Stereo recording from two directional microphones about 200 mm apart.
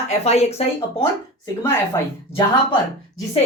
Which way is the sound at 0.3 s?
30° left (ahead or behind).